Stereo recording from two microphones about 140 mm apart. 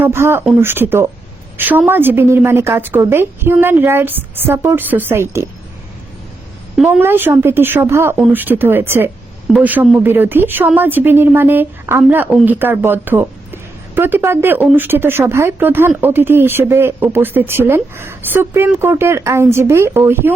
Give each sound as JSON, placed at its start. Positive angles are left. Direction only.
{"t": 0.0, "sound": "a woman's voice", "side_deg": -15}
{"t": 6.7, "sound": "a woman's voice", "side_deg": -5}
{"t": 7.0, "sound": "a woman's voice", "side_deg": -15}